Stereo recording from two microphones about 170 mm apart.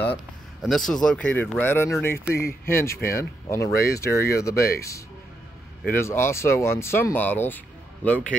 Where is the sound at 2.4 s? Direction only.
60° left (ahead or behind).